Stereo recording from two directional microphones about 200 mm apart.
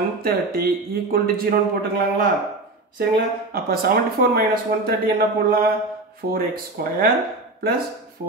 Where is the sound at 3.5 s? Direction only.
50° right (ahead or behind).